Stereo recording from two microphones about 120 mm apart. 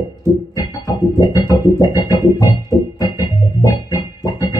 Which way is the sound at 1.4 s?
35° left (ahead or behind).